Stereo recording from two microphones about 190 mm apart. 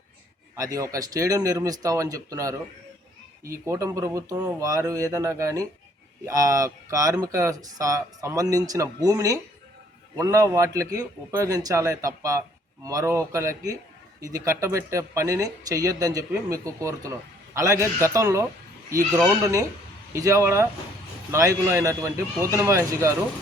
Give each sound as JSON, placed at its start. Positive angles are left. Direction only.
{"t": 0.5, "sound": "speech", "side_deg": -15}
{"t": 3.7, "sound": "speech", "side_deg": -15}